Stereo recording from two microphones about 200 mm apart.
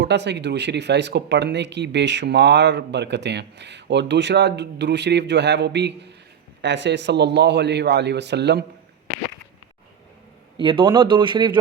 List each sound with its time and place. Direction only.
0.0 s speech: 60° right (ahead or behind)
10.6 s speech: 25° right (ahead or behind)